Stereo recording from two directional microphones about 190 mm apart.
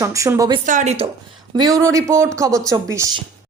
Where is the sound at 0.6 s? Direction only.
40° right (ahead or behind).